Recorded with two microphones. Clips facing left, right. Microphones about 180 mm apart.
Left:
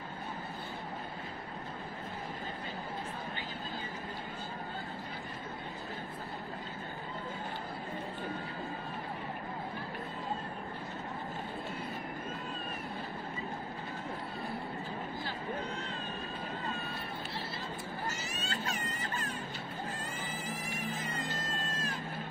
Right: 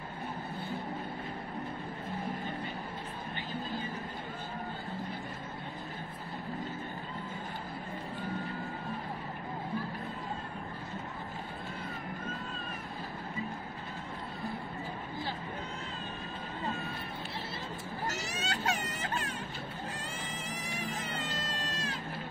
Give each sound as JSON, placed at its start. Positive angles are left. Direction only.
{"t": 18.0, "sound": "baby cry", "side_deg": -80}
{"t": 20.4, "sound": "cat", "side_deg": -85}
{"t": 21.5, "sound": "music", "side_deg": -85}